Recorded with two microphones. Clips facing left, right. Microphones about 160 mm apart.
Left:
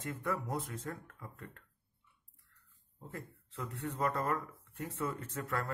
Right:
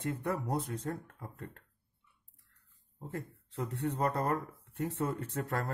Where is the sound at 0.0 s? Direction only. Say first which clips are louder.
Right 3 dB; 35° right (ahead or behind).